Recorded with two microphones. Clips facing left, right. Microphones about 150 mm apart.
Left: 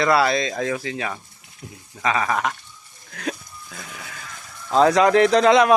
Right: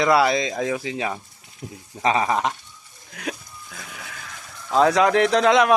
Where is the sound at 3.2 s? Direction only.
5° right (ahead or behind).